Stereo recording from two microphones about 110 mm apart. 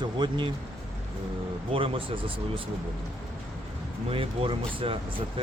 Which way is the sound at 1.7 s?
55° right (ahead or behind).